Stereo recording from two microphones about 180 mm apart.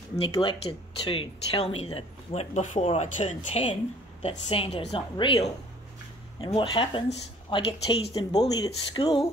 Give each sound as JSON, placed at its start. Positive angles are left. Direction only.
{"t": 0.1, "sound": "speech", "side_deg": 25}
{"t": 6.4, "sound": "speech", "side_deg": 30}